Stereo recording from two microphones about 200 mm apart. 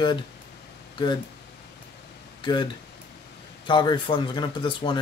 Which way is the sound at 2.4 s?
20° left (ahead or behind).